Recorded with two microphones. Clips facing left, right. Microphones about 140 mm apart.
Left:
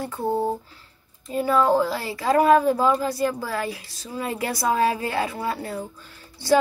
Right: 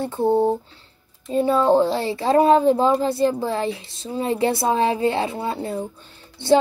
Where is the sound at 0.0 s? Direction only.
30° right (ahead or behind).